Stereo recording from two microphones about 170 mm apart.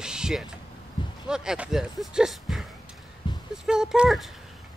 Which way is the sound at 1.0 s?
30° left (ahead or behind).